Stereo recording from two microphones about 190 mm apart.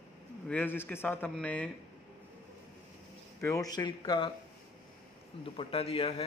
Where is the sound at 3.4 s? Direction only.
15° left (ahead or behind).